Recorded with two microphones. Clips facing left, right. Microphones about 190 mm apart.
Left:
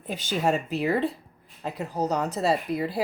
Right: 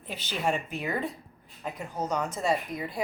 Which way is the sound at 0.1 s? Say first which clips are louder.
Left 5 dB; 45° left (ahead or behind).